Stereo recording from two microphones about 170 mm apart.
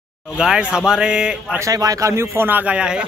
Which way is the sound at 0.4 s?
5° right (ahead or behind).